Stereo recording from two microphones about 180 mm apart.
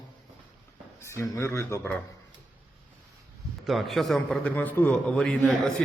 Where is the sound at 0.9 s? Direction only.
15° left (ahead or behind).